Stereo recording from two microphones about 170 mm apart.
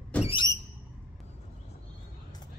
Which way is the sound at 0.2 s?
30° left (ahead or behind).